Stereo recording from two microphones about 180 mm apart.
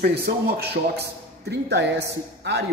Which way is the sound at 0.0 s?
60° right (ahead or behind).